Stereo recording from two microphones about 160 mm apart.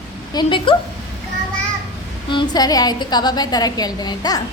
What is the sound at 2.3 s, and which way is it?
A woman's voice, 25° left (ahead or behind).